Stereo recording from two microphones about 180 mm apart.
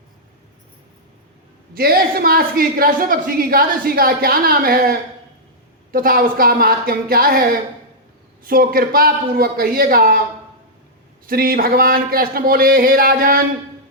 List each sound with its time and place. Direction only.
1.7 s a woman's voice: 55° right (ahead or behind)
8.4 s speech: 55° right (ahead or behind)
11.3 s speech: 55° right (ahead or behind)